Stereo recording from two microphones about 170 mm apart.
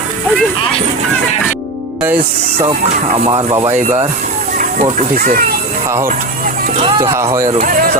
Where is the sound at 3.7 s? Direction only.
40° right (ahead or behind).